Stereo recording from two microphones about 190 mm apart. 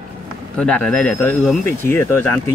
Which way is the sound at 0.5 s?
5° left (ahead or behind).